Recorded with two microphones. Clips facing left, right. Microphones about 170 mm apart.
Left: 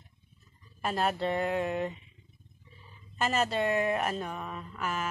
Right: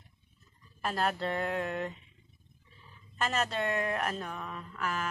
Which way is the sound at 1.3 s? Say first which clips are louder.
Left 3 dB; 15° left (ahead or behind).